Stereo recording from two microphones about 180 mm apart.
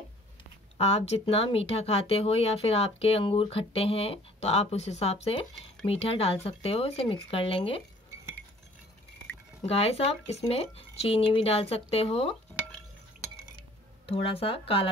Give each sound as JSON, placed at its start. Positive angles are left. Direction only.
{"t": 0.7, "sound": "speech", "side_deg": 35}
{"t": 9.7, "sound": "speech", "side_deg": 35}
{"t": 14.0, "sound": "speech", "side_deg": 30}